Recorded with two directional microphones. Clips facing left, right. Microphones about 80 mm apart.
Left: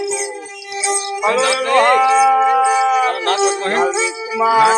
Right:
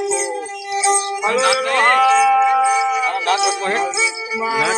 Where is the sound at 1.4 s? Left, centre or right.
Centre.